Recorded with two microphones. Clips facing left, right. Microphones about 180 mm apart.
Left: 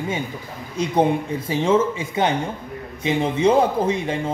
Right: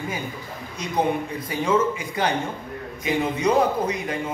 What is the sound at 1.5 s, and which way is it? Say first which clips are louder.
A man's voice: left 3 dB; 25° left (ahead or behind).